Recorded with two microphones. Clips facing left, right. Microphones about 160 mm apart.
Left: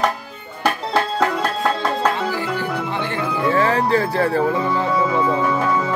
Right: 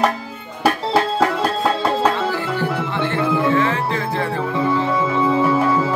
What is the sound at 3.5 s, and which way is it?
Music, 40° left (ahead or behind).